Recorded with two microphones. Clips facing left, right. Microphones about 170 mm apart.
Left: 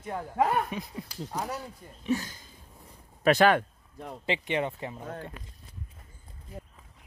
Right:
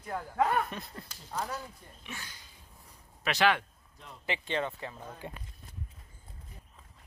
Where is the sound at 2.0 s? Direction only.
40° left (ahead or behind).